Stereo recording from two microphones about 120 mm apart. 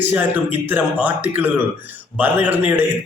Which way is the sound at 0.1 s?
15° right (ahead or behind).